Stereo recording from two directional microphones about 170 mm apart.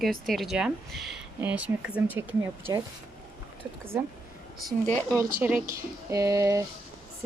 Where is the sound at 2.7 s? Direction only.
20° right (ahead or behind).